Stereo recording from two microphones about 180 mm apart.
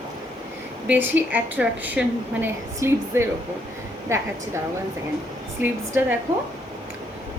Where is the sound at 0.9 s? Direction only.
10° right (ahead or behind).